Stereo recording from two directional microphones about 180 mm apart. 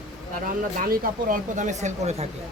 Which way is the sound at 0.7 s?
55° right (ahead or behind).